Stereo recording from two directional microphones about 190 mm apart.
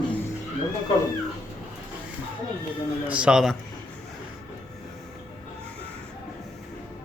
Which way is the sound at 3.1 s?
5° right (ahead or behind).